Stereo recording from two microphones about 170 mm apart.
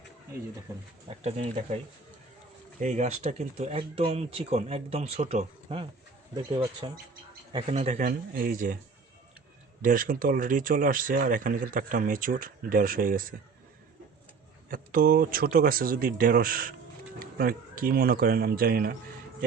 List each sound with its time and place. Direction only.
1.0 s speech: 40° right (ahead or behind)
2.8 s speech: 40° right (ahead or behind)
7.9 s speech: 55° right (ahead or behind)
9.8 s speech: 55° right (ahead or behind)
14.7 s speech: 55° right (ahead or behind)